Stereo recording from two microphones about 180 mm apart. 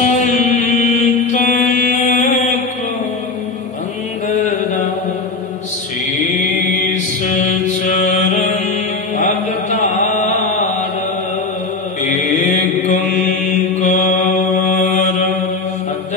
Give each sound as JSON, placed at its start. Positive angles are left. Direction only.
{"t": 0.0, "sound": "mantra", "side_deg": 45}
{"t": 6.4, "sound": "chant", "side_deg": 45}
{"t": 7.6, "sound": "mantra", "side_deg": 45}
{"t": 10.1, "sound": "chant", "side_deg": 40}
{"t": 12.0, "sound": "mantra", "side_deg": 45}